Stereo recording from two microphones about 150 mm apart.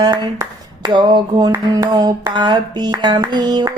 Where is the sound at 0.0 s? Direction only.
25° right (ahead or behind).